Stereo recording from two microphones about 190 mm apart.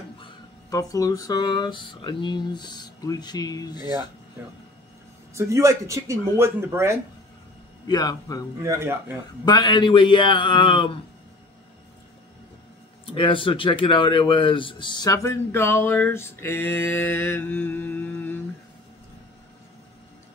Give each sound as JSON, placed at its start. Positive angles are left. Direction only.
{"t": 0.2, "sound": "speech", "side_deg": 20}
{"t": 5.3, "sound": "speech", "side_deg": -15}
{"t": 7.8, "sound": "speech", "side_deg": 20}
{"t": 8.6, "sound": "speech", "side_deg": -15}
{"t": 9.4, "sound": "speech", "side_deg": 20}
{"t": 13.0, "sound": "speech", "side_deg": 30}